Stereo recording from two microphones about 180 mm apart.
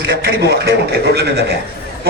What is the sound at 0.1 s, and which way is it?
A man's voice, 65° right (ahead or behind).